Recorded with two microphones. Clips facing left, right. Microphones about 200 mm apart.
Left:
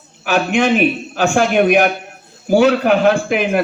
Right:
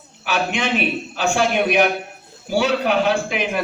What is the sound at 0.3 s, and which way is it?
A man's voice, 50° left (ahead or behind).